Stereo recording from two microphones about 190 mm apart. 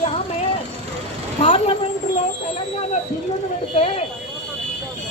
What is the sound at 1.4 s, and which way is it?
Speech, 30° left (ahead or behind).